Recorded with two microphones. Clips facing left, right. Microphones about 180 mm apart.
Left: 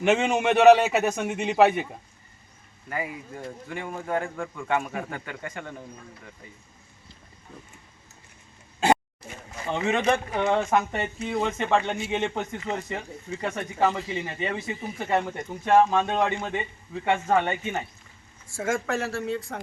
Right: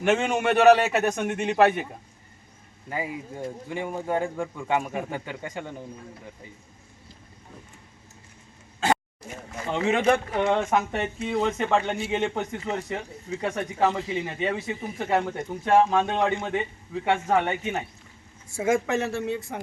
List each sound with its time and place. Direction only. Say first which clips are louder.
0.1 s speech: even; 5° left (ahead or behind)
2.9 s speech: right 1 dB; 20° right (ahead or behind)
10.1 s speech: right 1 dB; centre (ahead or behind)
18.5 s speech: right 4 dB; 20° right (ahead or behind)